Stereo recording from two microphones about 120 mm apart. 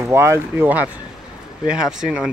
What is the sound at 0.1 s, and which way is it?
Speech, 20° right (ahead or behind).